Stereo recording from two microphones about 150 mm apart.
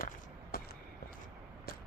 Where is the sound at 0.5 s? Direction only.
90° left.